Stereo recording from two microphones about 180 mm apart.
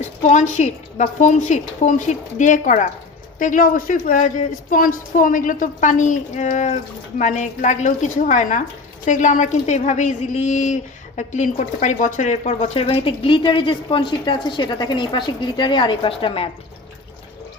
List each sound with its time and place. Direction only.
0.0 s a woman's voice: 40° left (ahead or behind)